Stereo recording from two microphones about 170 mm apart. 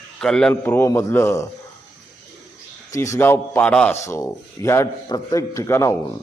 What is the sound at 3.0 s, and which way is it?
A man's voice, 15° left (ahead or behind).